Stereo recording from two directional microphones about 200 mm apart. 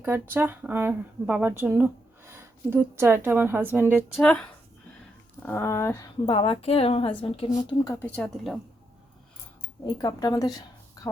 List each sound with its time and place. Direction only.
0.0 s speech: 10° right (ahead or behind)
4.2 s a woman's voice: 5° left (ahead or behind)
6.2 s a woman's voice: 30° left (ahead or behind)
8.0 s a woman's voice: 5° left (ahead or behind)
9.8 s a woman's voice: 20° left (ahead or behind)